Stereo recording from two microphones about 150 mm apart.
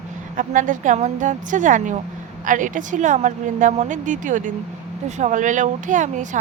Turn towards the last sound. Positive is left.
turn(degrees=-55)  # may be behind; listen again after turning